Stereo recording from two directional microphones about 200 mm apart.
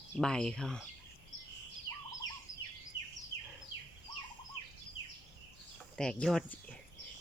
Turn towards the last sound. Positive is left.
turn(degrees=5)  # may be behind; listen again after turning